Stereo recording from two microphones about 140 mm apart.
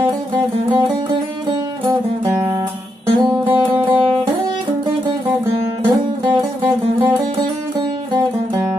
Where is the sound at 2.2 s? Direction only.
15° right (ahead or behind).